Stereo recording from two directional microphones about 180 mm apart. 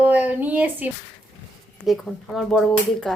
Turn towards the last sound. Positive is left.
turn(degrees=0)  # may be behind; listen again after turning